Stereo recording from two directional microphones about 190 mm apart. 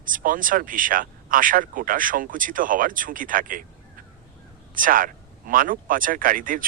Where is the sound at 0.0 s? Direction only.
45° right (ahead or behind).